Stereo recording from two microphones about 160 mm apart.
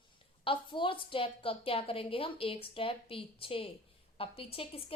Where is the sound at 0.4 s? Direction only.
30° left (ahead or behind).